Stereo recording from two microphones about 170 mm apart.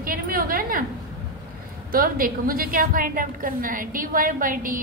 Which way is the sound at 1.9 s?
60° right (ahead or behind).